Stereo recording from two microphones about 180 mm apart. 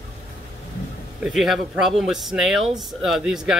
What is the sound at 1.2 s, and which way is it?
Speech, centre (ahead or behind).